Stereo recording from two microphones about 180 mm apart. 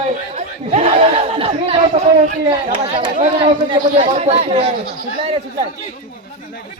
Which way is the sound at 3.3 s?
30° right (ahead or behind).